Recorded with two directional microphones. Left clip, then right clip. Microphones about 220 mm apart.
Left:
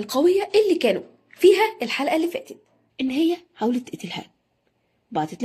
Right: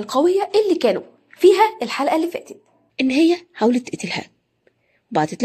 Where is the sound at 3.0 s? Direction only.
25° right (ahead or behind).